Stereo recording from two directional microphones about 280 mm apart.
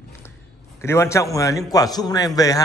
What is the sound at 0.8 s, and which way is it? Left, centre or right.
A man's voice, centre.